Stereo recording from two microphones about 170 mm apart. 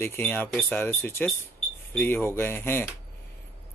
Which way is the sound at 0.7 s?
15° left (ahead or behind).